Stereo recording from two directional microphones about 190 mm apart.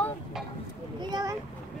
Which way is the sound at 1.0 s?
20° right (ahead or behind).